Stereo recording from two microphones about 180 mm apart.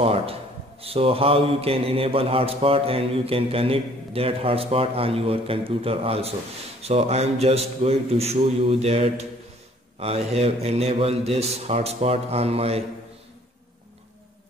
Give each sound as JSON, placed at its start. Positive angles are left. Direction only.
{"t": 0.0, "sound": "a man's voice", "side_deg": -35}